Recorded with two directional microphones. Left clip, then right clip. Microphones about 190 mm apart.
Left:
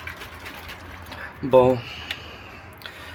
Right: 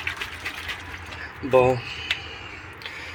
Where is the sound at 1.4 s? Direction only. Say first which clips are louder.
Left 2 dB; 40° left (ahead or behind).